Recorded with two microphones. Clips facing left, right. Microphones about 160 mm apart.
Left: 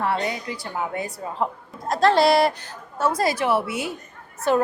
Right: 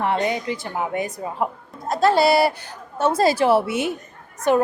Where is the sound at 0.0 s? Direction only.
20° right (ahead or behind).